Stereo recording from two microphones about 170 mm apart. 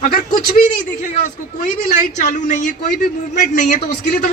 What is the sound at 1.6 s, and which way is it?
Speech, 50° left (ahead or behind).